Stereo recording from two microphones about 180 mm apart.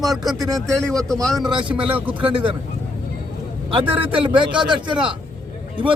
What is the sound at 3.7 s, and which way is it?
Speech, 30° right (ahead or behind).